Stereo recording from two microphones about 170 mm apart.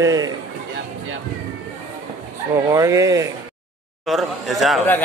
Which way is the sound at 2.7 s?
20° right (ahead or behind).